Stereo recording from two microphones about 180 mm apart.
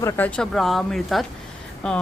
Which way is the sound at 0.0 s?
10° left (ahead or behind).